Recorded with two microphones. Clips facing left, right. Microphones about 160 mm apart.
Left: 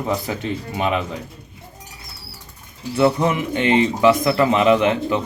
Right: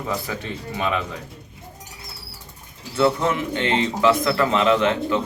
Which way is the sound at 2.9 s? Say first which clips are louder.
Left 2 dB; 15° left (ahead or behind).